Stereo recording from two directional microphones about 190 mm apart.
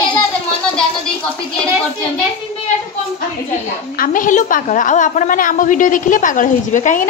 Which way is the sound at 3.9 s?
45° left (ahead or behind).